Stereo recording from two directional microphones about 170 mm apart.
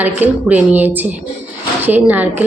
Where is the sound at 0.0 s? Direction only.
10° right (ahead or behind).